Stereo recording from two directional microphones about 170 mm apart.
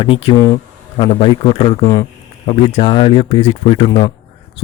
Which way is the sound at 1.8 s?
20° left (ahead or behind).